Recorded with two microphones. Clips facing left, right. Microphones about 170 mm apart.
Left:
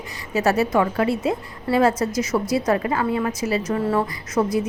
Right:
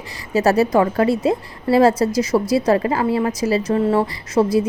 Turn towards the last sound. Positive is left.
turn(degrees=-30)  # may be behind; listen again after turning